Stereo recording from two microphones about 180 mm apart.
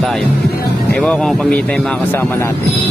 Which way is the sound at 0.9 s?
5° left (ahead or behind).